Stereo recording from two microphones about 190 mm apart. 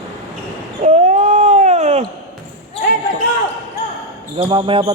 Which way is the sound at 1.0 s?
40° right (ahead or behind).